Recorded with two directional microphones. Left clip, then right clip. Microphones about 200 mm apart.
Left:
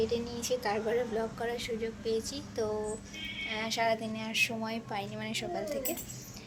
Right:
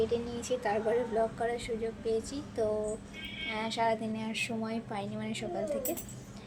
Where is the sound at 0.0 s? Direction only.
10° right (ahead or behind).